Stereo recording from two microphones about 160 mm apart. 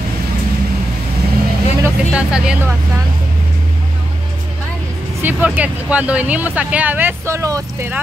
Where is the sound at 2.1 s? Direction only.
5° right (ahead or behind).